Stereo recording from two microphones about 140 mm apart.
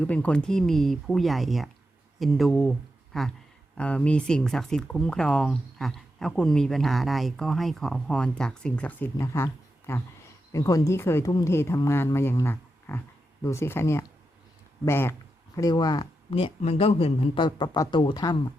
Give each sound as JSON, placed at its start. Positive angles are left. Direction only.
{"t": 0.0, "sound": "speech", "side_deg": 10}
{"t": 15.5, "sound": "speech", "side_deg": 30}
{"t": 16.6, "sound": "speech", "side_deg": 45}